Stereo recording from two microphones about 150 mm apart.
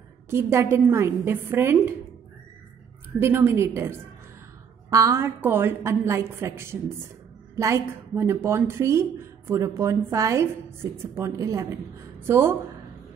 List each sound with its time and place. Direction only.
0.3 s a woman's voice: 15° right (ahead or behind)
3.2 s a woman's voice: 15° right (ahead or behind)